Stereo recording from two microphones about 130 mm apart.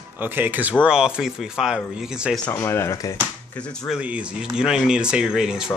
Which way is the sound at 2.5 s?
20° left (ahead or behind).